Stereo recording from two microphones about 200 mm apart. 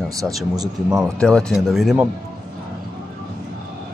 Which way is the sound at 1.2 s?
5° left (ahead or behind).